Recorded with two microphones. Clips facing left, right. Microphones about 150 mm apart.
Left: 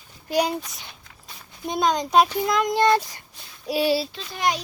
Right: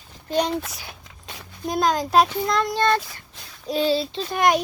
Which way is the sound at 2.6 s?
15° left (ahead or behind).